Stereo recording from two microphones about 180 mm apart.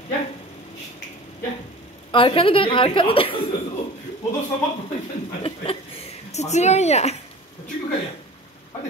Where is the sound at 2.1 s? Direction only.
30° left (ahead or behind).